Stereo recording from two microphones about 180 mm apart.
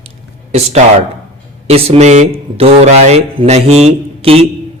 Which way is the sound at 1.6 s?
35° right (ahead or behind).